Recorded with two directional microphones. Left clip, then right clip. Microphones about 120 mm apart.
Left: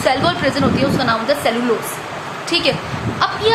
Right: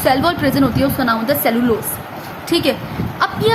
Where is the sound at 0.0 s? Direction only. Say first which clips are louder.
Right 1 dB; 45° right (ahead or behind).